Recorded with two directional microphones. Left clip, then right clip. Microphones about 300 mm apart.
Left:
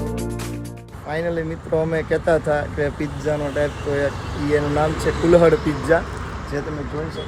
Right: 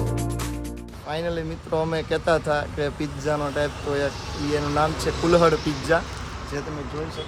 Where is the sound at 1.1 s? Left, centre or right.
Centre.